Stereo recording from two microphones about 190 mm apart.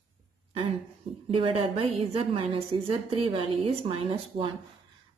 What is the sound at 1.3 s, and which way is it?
Speech, 30° right (ahead or behind).